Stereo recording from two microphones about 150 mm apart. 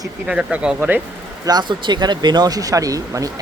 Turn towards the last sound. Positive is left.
turn(degrees=-25)  # may be behind; listen again after turning